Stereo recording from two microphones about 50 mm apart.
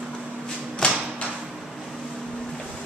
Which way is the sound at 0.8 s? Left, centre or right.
Left.